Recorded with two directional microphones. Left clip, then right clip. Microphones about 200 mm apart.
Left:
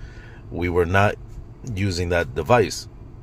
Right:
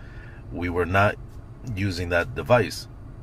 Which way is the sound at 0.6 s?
35° left (ahead or behind).